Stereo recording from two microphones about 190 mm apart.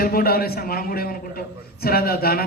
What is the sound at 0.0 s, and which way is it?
A man's voice, 50° left (ahead or behind).